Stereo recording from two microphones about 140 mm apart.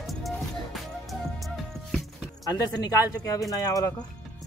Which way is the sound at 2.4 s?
25° left (ahead or behind).